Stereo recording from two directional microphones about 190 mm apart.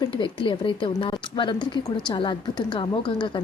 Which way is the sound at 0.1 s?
25° left (ahead or behind).